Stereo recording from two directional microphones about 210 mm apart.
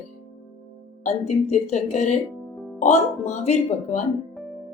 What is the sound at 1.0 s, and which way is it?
A woman's voice, 35° left (ahead or behind).